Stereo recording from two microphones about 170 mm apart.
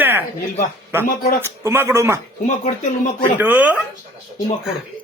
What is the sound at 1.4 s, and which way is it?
Speech, 15° right (ahead or behind).